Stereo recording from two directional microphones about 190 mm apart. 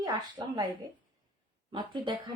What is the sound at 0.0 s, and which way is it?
Speech, 20° right (ahead or behind).